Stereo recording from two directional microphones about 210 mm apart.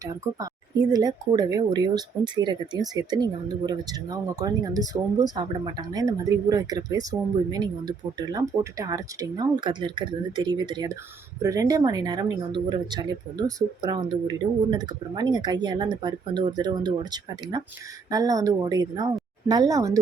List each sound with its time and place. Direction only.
0.0 s speech: 15° right (ahead or behind)